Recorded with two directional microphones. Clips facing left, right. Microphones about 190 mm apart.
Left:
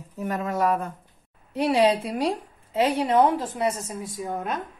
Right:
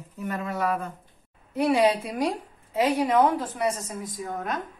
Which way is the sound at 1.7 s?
30° left (ahead or behind).